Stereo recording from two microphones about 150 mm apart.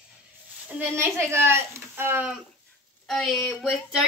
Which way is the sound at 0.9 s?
15° right (ahead or behind).